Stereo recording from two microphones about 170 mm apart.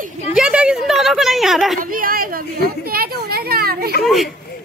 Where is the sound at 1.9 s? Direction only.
55° right (ahead or behind).